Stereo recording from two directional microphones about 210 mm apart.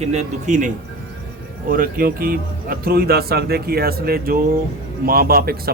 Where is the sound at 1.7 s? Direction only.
45° right (ahead or behind).